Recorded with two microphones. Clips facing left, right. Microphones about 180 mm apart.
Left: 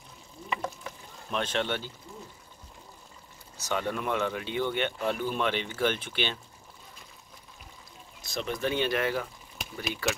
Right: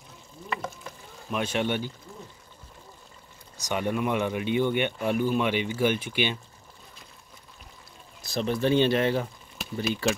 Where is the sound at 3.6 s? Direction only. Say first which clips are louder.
Right 3 dB; 15° right (ahead or behind).